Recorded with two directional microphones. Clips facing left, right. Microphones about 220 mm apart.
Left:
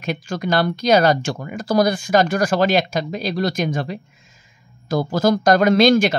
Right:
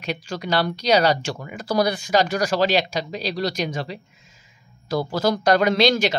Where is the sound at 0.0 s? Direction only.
50° left (ahead or behind).